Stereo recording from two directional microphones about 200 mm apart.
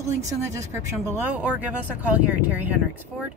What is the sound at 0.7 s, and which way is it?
Speech, 10° right (ahead or behind).